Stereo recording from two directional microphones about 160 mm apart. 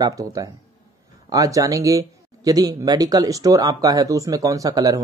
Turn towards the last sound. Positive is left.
turn(degrees=-20)  # may be behind; listen again after turning